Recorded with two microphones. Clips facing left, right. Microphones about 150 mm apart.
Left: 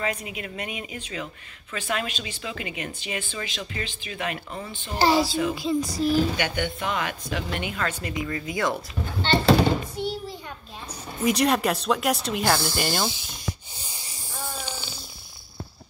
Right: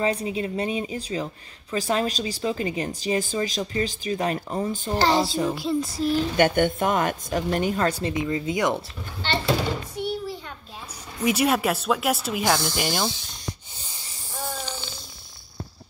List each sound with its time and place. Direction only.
0.0 s speech: 30° right (ahead or behind)
4.9 s speech: 10° left (ahead or behind)
6.3 s a woman's voice: 50° right (ahead or behind)
8.1 s speech: 20° right (ahead or behind)
11.2 s speech: 5° right (ahead or behind)
12.4 s snake: 5° left (ahead or behind)
14.6 s a sound: 10° left (ahead or behind)